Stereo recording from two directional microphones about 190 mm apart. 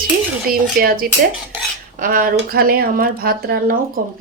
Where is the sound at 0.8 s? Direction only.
45° right (ahead or behind).